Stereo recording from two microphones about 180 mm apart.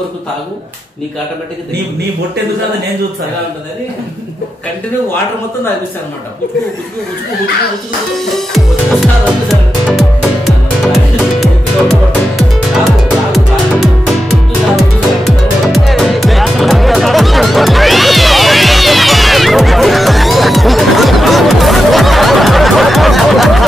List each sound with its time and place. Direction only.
8.3 s music: centre (ahead or behind)
14.8 s music: centre (ahead or behind)